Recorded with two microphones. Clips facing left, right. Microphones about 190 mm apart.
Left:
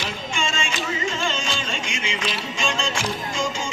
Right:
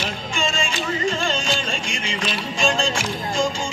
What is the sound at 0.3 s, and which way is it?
Music, 35° right (ahead or behind).